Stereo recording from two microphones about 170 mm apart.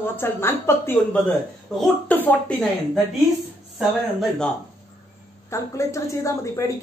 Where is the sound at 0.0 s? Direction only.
15° left (ahead or behind).